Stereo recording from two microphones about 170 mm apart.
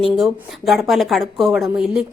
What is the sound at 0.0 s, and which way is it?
A woman's voice, centre (ahead or behind).